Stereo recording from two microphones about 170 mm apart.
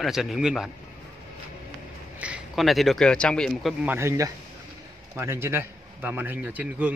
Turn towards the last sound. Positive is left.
turn(degrees=-10)  # may be behind; listen again after turning